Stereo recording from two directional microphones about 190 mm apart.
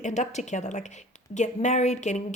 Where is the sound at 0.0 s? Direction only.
40° left (ahead or behind).